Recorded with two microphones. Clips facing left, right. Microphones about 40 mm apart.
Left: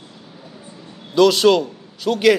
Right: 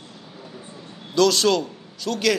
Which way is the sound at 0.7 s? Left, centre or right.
Centre.